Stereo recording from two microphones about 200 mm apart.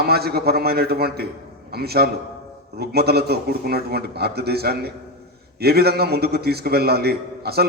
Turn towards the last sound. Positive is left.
turn(degrees=-50)  # may be behind; listen again after turning